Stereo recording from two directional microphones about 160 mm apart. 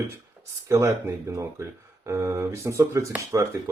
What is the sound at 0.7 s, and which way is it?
Speech, 15° right (ahead or behind).